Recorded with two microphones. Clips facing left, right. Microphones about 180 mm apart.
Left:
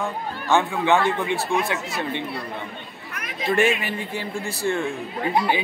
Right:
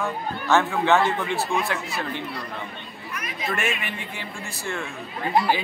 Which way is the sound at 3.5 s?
30° left (ahead or behind).